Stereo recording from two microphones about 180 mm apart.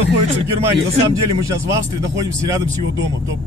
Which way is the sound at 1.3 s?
20° right (ahead or behind).